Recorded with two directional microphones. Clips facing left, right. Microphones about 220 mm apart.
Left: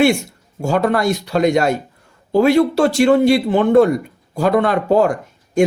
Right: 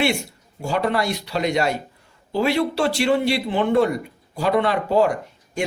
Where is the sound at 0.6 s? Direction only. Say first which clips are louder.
Left 6 dB; 45° left (ahead or behind).